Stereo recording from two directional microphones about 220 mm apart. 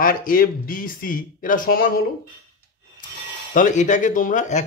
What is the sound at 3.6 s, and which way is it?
Speech, 35° left (ahead or behind).